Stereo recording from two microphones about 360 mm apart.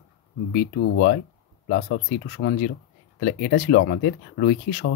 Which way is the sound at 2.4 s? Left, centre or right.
Left.